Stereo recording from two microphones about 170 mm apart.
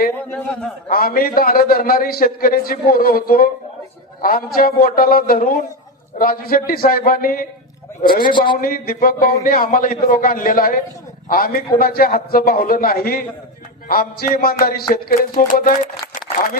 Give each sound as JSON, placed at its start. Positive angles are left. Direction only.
{"t": 0.9, "sound": "a man's voice", "side_deg": 60}
{"t": 8.2, "sound": "a man's voice", "side_deg": 30}
{"t": 8.6, "sound": "a man's voice", "side_deg": 55}